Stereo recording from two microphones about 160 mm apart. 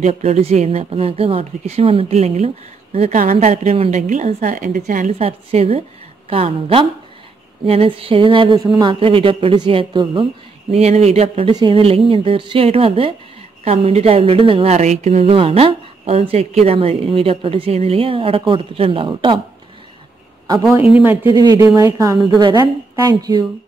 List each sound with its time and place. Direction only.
0.0 s a woman's voice: 40° right (ahead or behind)
3.2 s a woman's voice: 55° right (ahead or behind); by 19.4 s 30° right (ahead or behind)
21.0 s speech: 10° right (ahead or behind)
21.3 s a woman's voice: 25° right (ahead or behind)